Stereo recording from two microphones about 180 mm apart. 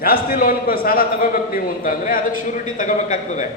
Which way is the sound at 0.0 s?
55° left (ahead or behind).